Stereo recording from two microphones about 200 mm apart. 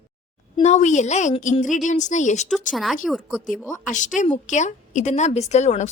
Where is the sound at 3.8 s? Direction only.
40° left (ahead or behind).